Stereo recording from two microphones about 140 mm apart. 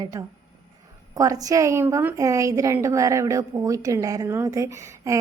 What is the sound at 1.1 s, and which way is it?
A woman's voice, 25° right (ahead or behind).